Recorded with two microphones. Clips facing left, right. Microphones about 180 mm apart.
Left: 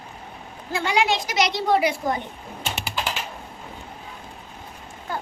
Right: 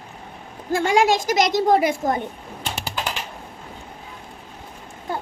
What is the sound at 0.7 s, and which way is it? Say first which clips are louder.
A woman's voice: right 5 dB; 45° right (ahead or behind).